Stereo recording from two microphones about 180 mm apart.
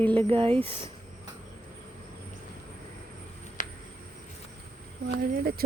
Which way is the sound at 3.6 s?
45° left (ahead or behind).